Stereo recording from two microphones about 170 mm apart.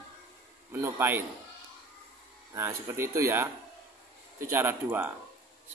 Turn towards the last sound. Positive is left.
turn(degrees=-15)  # may be behind; listen again after turning